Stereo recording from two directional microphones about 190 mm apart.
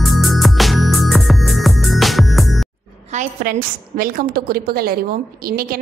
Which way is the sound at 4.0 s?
50° right (ahead or behind).